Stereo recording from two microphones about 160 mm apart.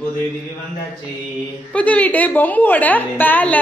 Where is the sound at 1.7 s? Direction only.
10° left (ahead or behind).